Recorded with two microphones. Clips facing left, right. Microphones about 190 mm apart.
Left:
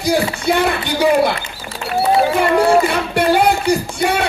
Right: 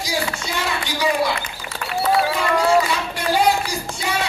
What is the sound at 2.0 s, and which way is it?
Speech, 25° left (ahead or behind).